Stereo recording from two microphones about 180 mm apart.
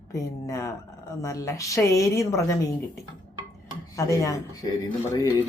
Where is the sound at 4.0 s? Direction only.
20° left (ahead or behind).